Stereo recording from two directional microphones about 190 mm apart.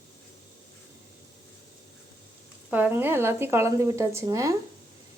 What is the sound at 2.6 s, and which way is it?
Speech, 10° right (ahead or behind).